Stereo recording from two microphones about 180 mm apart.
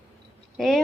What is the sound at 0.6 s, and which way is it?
Speech, centre (ahead or behind).